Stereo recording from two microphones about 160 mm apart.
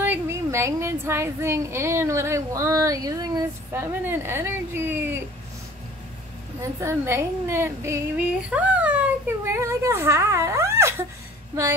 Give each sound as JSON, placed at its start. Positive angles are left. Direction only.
{"t": 0.0, "sound": "a woman's voice", "side_deg": -15}
{"t": 6.6, "sound": "a woman's voice", "side_deg": -15}